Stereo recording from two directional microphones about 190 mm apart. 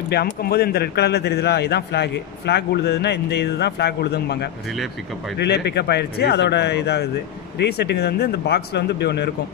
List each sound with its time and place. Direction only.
0.1 s speech: 55° left (ahead or behind)